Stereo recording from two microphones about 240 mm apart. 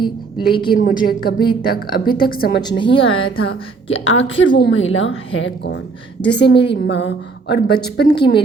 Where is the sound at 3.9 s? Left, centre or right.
Left.